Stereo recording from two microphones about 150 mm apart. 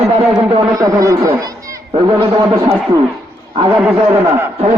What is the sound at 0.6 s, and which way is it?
A man's voice, 25° right (ahead or behind).